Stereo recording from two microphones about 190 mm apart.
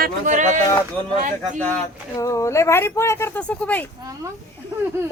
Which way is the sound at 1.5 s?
5° left (ahead or behind).